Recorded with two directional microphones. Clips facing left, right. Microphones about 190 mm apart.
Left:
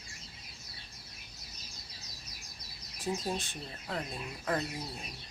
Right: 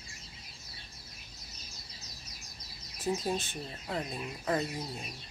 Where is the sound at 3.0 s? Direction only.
Centre (ahead or behind).